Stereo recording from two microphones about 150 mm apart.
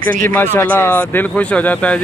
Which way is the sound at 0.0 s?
70° right (ahead or behind).